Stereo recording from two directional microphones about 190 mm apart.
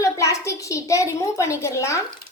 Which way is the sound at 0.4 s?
15° left (ahead or behind).